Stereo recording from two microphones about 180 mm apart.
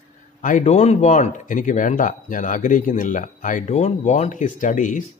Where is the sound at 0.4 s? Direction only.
45° left (ahead or behind).